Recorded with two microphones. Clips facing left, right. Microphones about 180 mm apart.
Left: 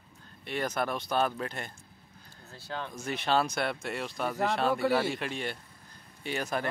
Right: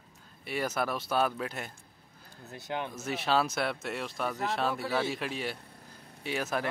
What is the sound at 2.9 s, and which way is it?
Speech, 5° right (ahead or behind).